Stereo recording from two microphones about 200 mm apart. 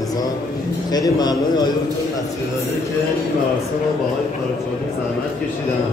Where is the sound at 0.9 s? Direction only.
20° left (ahead or behind).